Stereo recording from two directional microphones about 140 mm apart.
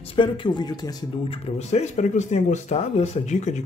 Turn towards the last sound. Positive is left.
turn(degrees=60)  # may be behind; listen again after turning